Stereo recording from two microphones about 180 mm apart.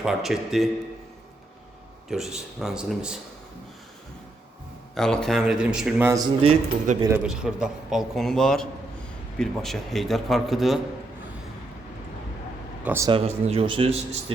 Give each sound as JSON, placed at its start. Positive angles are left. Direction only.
{"t": 0.0, "sound": "speech", "side_deg": 0}
{"t": 2.0, "sound": "speech", "side_deg": 0}
{"t": 4.9, "sound": "speech", "side_deg": 5}
{"t": 6.4, "sound": "a man's voice", "side_deg": -35}
{"t": 7.2, "sound": "speech", "side_deg": -5}
{"t": 12.8, "sound": "speech", "side_deg": -10}
{"t": 13.1, "sound": "a man's voice", "side_deg": -35}